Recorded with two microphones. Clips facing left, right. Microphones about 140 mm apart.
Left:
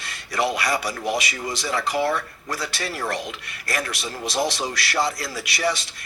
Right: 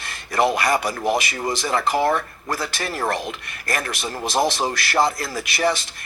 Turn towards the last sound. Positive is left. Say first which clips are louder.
# right 3 dB
turn(degrees=-50)  # may be behind; listen again after turning